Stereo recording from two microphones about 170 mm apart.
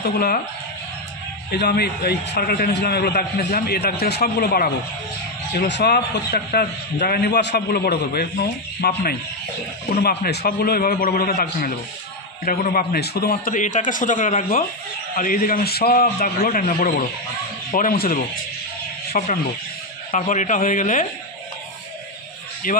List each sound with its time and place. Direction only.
1.5 s a man's voice: 70° left (ahead or behind)
5.6 s a man's voice: 80° left; by 21.1 s 50° left (ahead or behind)
22.6 s a man's voice: 55° left (ahead or behind)